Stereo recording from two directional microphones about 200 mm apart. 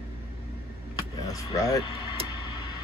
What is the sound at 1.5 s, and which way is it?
Speech, 15° left (ahead or behind).